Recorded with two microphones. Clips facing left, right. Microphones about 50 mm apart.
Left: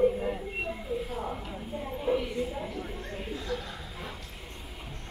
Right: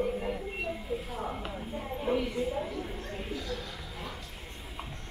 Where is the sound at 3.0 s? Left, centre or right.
Left.